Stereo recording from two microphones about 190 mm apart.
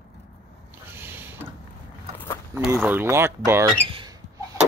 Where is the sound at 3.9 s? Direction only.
30° right (ahead or behind).